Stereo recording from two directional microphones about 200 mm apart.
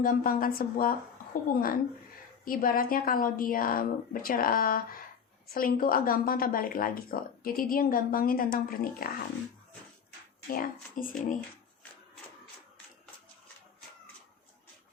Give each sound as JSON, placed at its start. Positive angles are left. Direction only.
{"t": 0.0, "sound": "speech", "side_deg": 45}
{"t": 10.5, "sound": "speech", "side_deg": 45}